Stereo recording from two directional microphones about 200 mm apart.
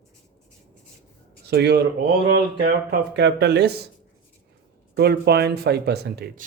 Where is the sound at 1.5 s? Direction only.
55° right (ahead or behind).